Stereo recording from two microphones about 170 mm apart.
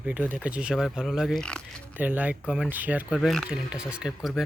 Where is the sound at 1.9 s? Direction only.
10° right (ahead or behind).